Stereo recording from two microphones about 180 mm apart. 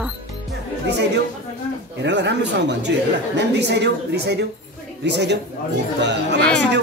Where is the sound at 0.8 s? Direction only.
70° right (ahead or behind).